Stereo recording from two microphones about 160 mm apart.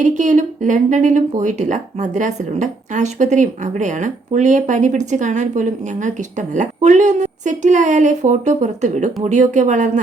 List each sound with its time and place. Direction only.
0.0 s speech: 50° right (ahead or behind)